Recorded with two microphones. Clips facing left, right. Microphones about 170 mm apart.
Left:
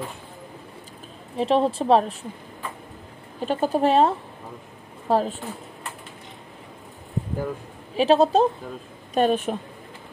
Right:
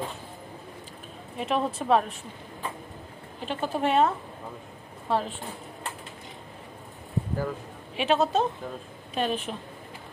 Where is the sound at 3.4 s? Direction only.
40° left (ahead or behind).